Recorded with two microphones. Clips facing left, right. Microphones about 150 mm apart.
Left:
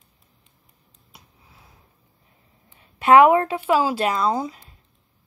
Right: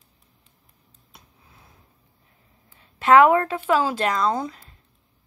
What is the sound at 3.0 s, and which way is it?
Speech, 15° left (ahead or behind).